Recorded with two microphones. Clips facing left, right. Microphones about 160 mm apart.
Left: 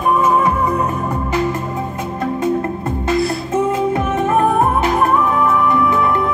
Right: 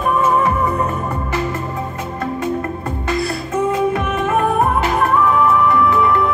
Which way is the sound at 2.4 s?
20° left (ahead or behind).